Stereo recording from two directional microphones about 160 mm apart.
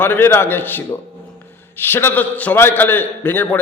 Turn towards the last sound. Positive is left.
turn(degrees=10)  # may be behind; listen again after turning